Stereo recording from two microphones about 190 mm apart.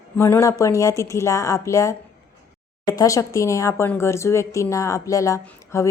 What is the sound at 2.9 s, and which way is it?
A woman's voice, 15° left (ahead or behind).